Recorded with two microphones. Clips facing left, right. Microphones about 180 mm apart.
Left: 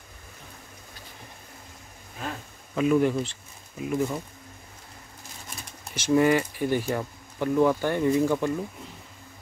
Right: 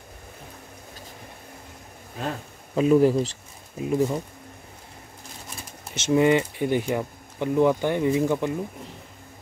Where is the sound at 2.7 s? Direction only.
35° right (ahead or behind).